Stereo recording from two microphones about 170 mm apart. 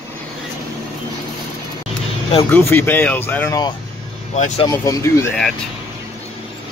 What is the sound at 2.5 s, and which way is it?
Speech, 10° left (ahead or behind).